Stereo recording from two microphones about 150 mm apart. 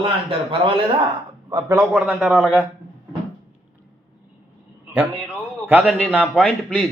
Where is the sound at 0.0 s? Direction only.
35° right (ahead or behind).